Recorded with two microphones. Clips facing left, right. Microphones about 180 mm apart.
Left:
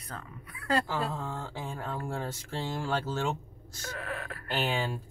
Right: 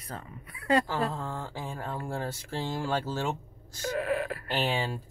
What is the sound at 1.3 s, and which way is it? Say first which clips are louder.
Speech: right 1 dB; 10° right (ahead or behind).